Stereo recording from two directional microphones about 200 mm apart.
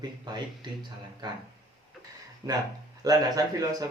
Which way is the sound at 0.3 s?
20° right (ahead or behind).